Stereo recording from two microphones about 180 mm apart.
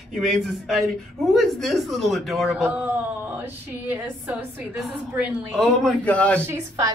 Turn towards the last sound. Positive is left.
turn(degrees=-15)  # may be behind; listen again after turning